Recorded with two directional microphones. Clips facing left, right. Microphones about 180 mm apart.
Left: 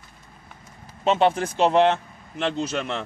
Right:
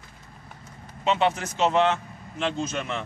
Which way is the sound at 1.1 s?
45° left (ahead or behind).